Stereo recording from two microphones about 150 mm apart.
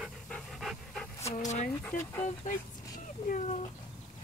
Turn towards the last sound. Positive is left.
turn(degrees=55)  # may be behind; listen again after turning